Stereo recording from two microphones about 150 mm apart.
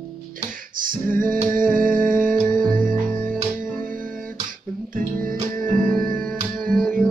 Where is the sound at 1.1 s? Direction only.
65° right (ahead or behind).